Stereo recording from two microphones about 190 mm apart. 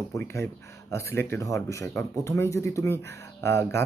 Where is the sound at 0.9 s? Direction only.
15° left (ahead or behind).